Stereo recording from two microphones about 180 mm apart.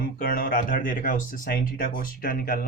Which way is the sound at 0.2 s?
50° left (ahead or behind).